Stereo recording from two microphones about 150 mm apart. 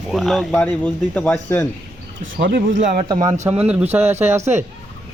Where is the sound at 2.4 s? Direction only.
55° right (ahead or behind).